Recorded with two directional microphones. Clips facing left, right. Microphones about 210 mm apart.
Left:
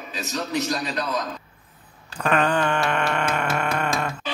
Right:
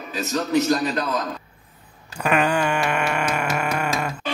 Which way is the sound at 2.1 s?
10° right (ahead or behind).